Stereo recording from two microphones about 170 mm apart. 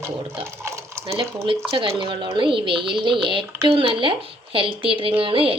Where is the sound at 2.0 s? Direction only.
30° right (ahead or behind).